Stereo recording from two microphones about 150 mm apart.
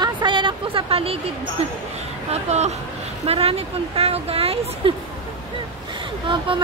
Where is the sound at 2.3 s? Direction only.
45° right (ahead or behind).